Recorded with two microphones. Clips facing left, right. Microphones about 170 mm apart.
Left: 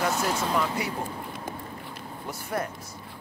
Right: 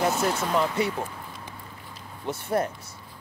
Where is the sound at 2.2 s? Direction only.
25° right (ahead or behind).